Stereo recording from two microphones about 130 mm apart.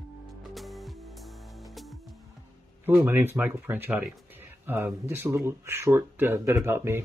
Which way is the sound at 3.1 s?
15° right (ahead or behind).